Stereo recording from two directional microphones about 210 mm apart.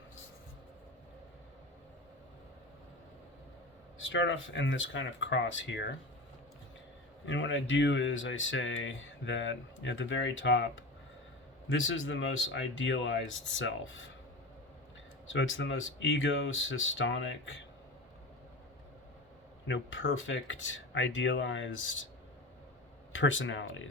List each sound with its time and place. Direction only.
4.0 s speech: 60° left (ahead or behind)
7.3 s speech: 60° left (ahead or behind)
15.3 s speech: 60° left (ahead or behind)
19.6 s speech: 60° left (ahead or behind)
23.1 s speech: 65° left (ahead or behind)